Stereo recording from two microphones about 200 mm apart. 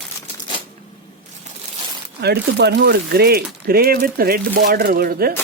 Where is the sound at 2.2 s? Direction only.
55° right (ahead or behind).